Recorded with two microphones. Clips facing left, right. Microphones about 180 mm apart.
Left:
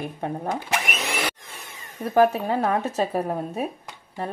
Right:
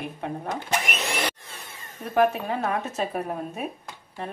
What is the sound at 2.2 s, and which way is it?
A woman's voice, 35° left (ahead or behind).